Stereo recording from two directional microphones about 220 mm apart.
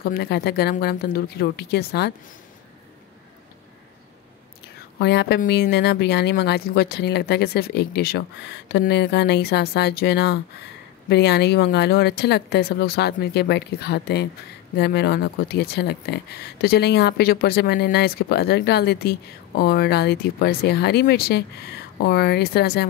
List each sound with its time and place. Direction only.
0.0 s speech: 45° left (ahead or behind)
4.9 s speech: 50° left (ahead or behind)